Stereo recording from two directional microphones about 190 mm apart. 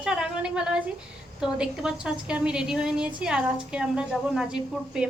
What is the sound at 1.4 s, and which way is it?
A woman's voice, 5° right (ahead or behind).